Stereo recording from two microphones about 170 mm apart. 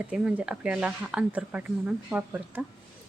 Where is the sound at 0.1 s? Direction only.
5° right (ahead or behind).